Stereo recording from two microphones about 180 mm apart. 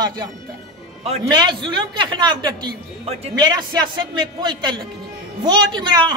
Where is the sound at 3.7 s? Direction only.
25° right (ahead or behind).